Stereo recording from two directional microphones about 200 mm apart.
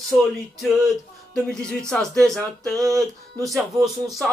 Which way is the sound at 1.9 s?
5° left (ahead or behind).